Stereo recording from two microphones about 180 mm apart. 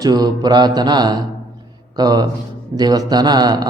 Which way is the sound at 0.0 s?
20° right (ahead or behind).